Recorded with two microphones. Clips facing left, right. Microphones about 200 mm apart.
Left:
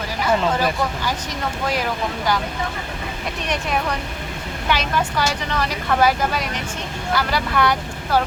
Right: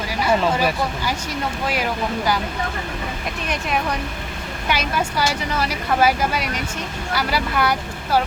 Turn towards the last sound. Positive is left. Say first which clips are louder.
# left 1 dB
turn(degrees=-5)  # may be behind; listen again after turning